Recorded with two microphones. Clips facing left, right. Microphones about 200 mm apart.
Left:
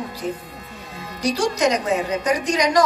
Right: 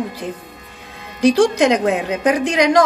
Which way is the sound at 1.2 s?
55° right (ahead or behind).